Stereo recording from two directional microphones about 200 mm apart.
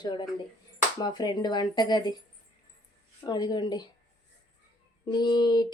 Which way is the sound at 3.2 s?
20° left (ahead or behind).